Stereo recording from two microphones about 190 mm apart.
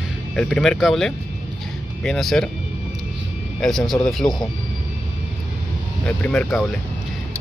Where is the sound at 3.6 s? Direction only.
Centre (ahead or behind).